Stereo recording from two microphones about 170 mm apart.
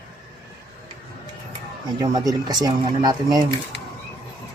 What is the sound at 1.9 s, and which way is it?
Speech, 20° right (ahead or behind).